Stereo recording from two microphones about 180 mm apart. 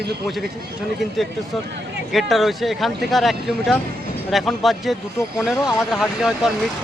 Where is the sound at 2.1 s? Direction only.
Centre (ahead or behind).